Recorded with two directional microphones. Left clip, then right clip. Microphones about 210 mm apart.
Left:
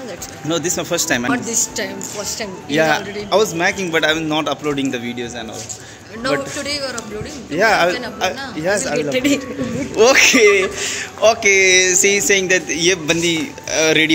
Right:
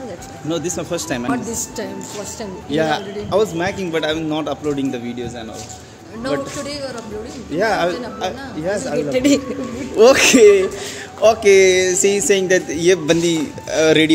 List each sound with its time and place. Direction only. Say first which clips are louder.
0.5 s a man's voice: left 3 dB; 5° left (ahead or behind)
1.3 s a man's voice: left 3 dB; 35° right (ahead or behind)
2.7 s a man's voice: left 3 dB; 10° left (ahead or behind)
6.2 s speech: left 3 dB; 25° right (ahead or behind)
7.5 s speech: left 3 dB; 10° left (ahead or behind)
9.1 s a man's voice: right 3 dB; 55° right (ahead or behind)
9.9 s a man's voice: right 1 dB; 30° right (ahead or behind)
10.8 s a man's voice: left 3 dB; 15° right (ahead or behind)
11.2 s speech: right 1 dB; 25° right (ahead or behind)